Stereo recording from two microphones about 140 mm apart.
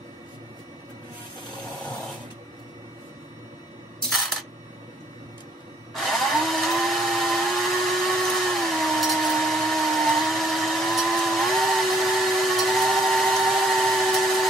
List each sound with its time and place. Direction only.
5.9 s blender: centre (ahead or behind)